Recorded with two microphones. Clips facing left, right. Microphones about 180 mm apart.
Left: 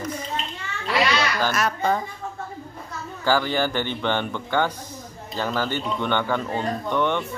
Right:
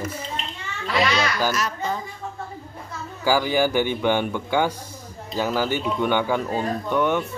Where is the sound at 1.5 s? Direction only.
60° left (ahead or behind).